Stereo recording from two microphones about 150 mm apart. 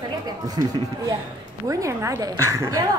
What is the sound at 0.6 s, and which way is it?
A woman's voice, 30° right (ahead or behind).